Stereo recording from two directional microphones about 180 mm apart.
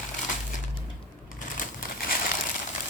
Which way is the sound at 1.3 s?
50° left (ahead or behind).